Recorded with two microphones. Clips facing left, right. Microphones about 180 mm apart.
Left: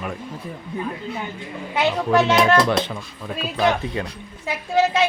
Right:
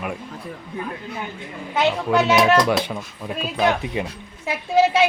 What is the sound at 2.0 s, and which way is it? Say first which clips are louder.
A man's voice: even; 5° right (ahead or behind).